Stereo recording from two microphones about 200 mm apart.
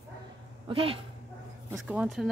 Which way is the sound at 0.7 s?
25° right (ahead or behind).